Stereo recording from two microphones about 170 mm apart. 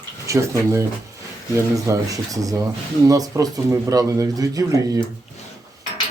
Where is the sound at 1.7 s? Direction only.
20° right (ahead or behind).